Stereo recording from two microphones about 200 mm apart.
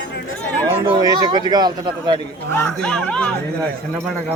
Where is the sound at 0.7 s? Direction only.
25° right (ahead or behind).